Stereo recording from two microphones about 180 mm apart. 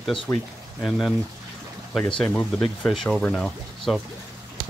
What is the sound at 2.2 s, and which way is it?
Speech, 5° left (ahead or behind).